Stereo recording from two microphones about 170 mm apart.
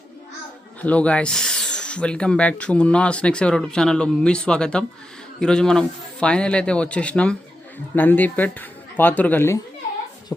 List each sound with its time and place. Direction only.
0.8 s a man's voice: 10° left (ahead or behind)